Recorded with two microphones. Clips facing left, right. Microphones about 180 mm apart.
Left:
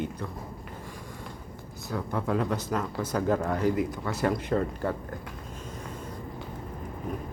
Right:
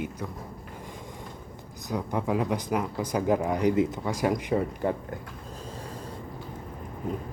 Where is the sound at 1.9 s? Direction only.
15° right (ahead or behind).